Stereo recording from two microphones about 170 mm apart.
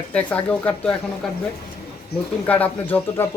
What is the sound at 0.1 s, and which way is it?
Speech, 10° left (ahead or behind).